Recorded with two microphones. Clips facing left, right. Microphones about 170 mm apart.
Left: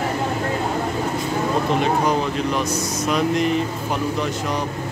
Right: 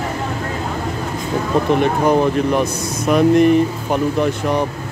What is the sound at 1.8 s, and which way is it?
Speech, 55° right (ahead or behind).